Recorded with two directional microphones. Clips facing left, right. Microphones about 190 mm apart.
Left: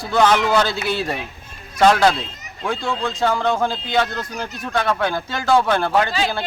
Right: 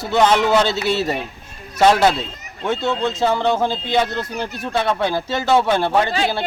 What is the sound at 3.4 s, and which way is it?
Speech, 5° right (ahead or behind).